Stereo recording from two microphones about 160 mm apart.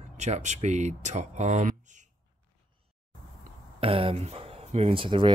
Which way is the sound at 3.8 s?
35° right (ahead or behind).